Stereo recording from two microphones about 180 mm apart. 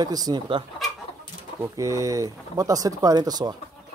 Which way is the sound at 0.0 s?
20° right (ahead or behind).